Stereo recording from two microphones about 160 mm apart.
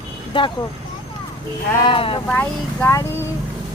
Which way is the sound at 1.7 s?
30° left (ahead or behind).